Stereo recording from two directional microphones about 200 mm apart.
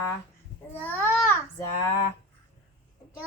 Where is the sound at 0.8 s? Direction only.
10° left (ahead or behind).